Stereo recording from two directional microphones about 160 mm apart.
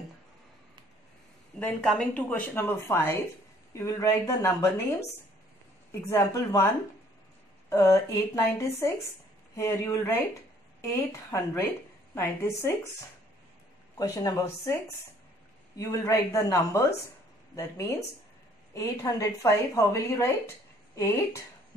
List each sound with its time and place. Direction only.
1.6 s a woman's voice: 5° left (ahead or behind)
5.9 s a woman's voice: 20° left (ahead or behind)
7.7 s a woman's voice: 20° left (ahead or behind)
13.9 s a woman's voice: 20° left (ahead or behind)